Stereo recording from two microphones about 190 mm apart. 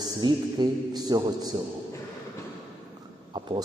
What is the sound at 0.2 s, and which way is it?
A man's voice, 20° right (ahead or behind).